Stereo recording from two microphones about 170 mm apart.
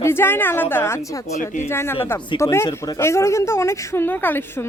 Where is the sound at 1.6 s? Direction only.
15° left (ahead or behind).